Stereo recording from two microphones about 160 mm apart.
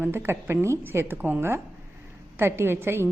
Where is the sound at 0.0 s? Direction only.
15° right (ahead or behind).